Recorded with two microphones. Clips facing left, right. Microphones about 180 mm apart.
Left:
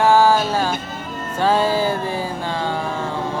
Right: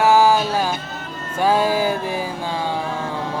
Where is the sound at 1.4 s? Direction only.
10° right (ahead or behind).